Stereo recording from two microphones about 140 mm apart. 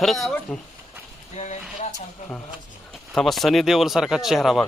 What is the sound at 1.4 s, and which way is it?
Speech, 50° left (ahead or behind).